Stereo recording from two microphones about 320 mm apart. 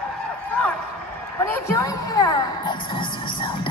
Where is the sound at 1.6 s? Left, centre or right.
Centre.